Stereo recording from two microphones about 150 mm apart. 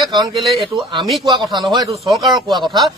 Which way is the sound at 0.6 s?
35° right (ahead or behind).